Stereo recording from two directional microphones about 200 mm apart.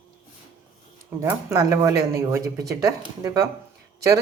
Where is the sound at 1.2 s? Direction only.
15° right (ahead or behind).